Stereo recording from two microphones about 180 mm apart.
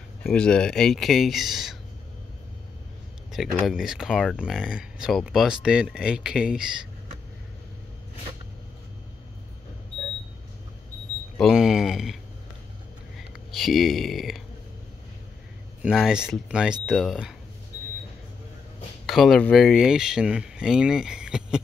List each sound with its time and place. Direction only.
0.2 s speech: 5° left (ahead or behind)
3.3 s speech: centre (ahead or behind)
11.3 s speech: centre (ahead or behind)
13.5 s speech: centre (ahead or behind)
15.8 s speech: 5° right (ahead or behind)
19.0 s speech: centre (ahead or behind)